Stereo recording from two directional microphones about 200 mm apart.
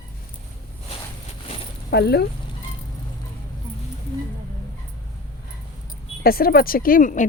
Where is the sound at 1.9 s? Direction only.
55° left (ahead or behind).